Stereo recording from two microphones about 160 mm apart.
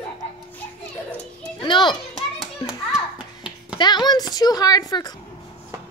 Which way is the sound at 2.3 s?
5° right (ahead or behind).